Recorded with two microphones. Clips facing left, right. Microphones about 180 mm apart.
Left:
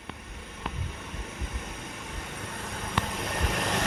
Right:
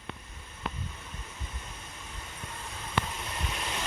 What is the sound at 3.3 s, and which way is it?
Vehicle, 75° left (ahead or behind).